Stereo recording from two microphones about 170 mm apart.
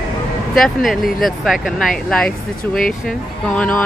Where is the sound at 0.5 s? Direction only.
Centre (ahead or behind).